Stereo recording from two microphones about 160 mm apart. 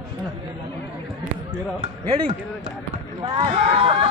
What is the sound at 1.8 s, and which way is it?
Speech, 40° right (ahead or behind).